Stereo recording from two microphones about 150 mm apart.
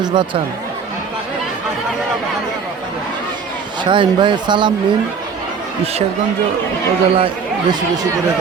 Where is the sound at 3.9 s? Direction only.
30° right (ahead or behind).